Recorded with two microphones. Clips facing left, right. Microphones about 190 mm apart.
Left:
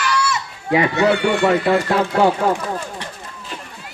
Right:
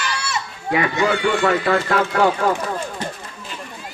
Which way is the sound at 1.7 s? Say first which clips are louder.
Left 2 dB; 15° left (ahead or behind).